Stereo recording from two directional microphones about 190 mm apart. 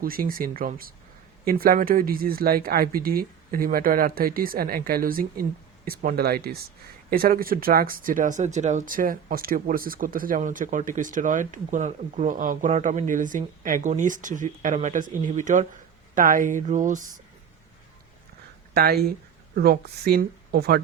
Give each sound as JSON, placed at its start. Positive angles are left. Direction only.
{"t": 0.0, "sound": "speech", "side_deg": -50}
{"t": 18.7, "sound": "speech", "side_deg": -55}